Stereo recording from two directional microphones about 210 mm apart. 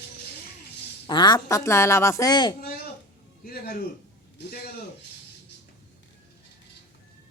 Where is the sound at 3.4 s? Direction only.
45° left (ahead or behind).